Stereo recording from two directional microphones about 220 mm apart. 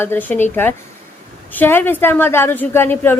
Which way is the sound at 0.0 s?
10° left (ahead or behind).